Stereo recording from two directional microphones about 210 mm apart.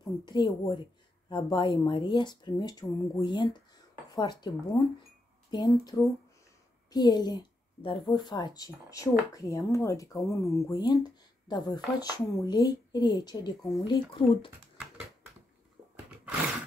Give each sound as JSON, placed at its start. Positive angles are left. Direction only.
{"t": 0.0, "sound": "a woman's voice", "side_deg": 20}